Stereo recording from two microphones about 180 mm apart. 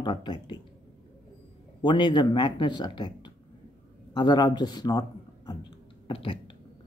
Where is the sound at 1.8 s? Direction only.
25° left (ahead or behind).